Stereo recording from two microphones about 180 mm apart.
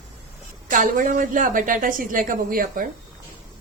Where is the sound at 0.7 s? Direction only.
45° right (ahead or behind).